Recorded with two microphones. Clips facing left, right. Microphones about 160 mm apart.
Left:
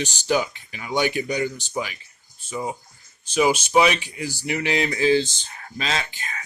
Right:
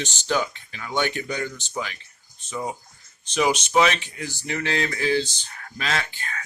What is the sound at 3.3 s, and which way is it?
Speech, 5° left (ahead or behind).